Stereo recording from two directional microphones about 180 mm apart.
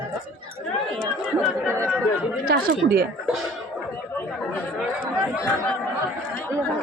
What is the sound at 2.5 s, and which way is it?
Speech, 60° right (ahead or behind).